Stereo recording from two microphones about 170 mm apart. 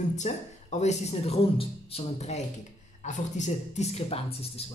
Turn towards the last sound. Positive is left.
turn(degrees=35)  # may be behind; listen again after turning